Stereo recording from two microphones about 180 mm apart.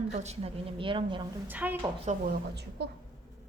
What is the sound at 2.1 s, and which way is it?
Speech, 40° right (ahead or behind).